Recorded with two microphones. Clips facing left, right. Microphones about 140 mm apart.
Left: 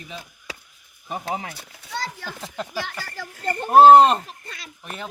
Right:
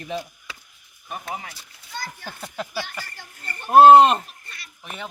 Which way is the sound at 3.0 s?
90° left.